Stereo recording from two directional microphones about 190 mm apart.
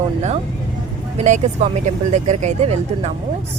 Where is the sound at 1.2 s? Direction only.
35° right (ahead or behind).